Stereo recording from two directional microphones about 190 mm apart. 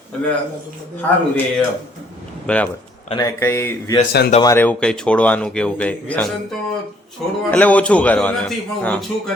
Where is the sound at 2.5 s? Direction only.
5° left (ahead or behind).